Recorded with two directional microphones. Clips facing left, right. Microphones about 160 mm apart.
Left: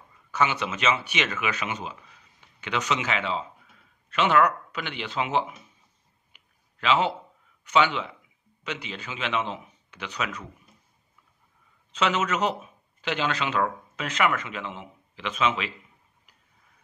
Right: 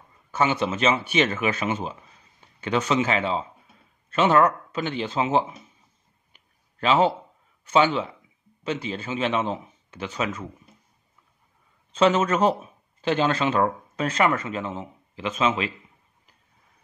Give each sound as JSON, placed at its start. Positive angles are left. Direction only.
{"t": 0.6, "sound": "a man's voice", "side_deg": -30}
{"t": 6.8, "sound": "a man's voice", "side_deg": -40}
{"t": 10.1, "sound": "speech", "side_deg": -25}
{"t": 12.0, "sound": "a man's voice", "side_deg": -35}